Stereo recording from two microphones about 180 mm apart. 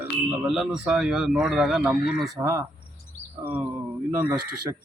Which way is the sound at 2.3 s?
15° right (ahead or behind).